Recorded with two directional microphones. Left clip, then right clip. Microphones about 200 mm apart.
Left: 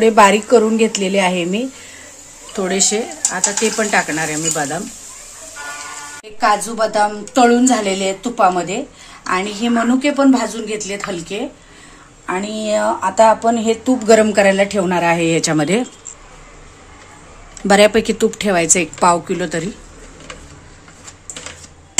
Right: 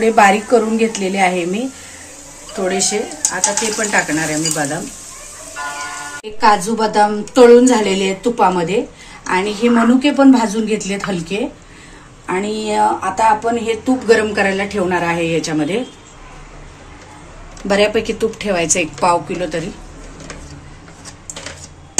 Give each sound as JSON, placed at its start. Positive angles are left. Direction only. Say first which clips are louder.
{"t": 0.0, "sound": "a woman's voice", "louder": "left 1 dB", "side_deg": 55}
{"t": 6.4, "sound": "a woman's voice", "louder": "right 2 dB", "side_deg": 45}
{"t": 12.6, "sound": "a woman's voice", "louder": "right 1 dB", "side_deg": 55}
{"t": 17.6, "sound": "a woman's voice", "louder": "left 3 dB", "side_deg": 55}